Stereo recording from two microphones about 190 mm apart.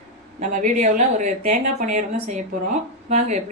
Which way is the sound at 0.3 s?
40° right (ahead or behind).